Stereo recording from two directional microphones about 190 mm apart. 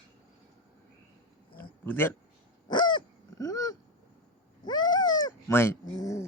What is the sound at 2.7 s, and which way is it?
Dog, 25° left (ahead or behind).